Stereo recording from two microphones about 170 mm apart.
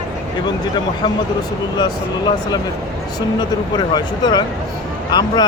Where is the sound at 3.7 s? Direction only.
25° left (ahead or behind).